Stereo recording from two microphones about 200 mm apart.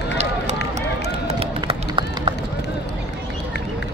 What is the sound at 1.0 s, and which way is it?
Run, 30° right (ahead or behind).